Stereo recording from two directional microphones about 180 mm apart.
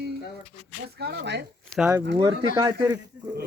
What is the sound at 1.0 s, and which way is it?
Speech, 70° right (ahead or behind).